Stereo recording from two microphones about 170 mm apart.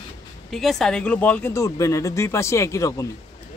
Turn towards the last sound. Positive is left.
turn(degrees=20)  # may be behind; listen again after turning